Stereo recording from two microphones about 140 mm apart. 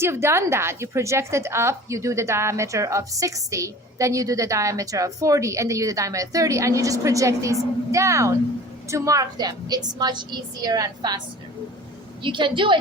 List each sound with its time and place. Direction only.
0.0 s a woman's voice: 20° right (ahead or behind)
12.2 s a woman's voice: 35° right (ahead or behind)